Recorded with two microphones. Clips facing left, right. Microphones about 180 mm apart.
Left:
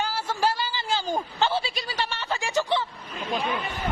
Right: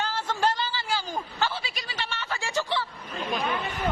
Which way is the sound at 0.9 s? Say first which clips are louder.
Left 4 dB; 25° left (ahead or behind).